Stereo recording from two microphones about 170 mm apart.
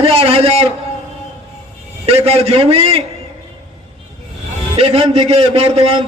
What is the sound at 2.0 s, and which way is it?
A man's voice, 35° right (ahead or behind).